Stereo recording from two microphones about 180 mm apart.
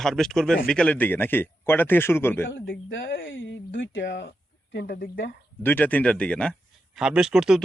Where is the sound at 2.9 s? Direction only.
90° left; by 5.4 s 70° left (ahead or behind).